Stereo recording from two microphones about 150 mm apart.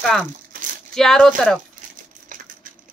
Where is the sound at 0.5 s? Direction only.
65° right (ahead or behind).